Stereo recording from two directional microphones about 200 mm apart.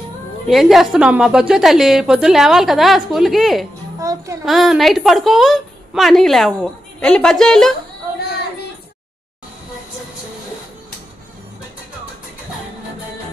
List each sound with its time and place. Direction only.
0.5 s a woman's voice: centre (ahead or behind)
4.0 s a child's voice: 15° right (ahead or behind)
4.5 s a woman's voice: centre (ahead or behind)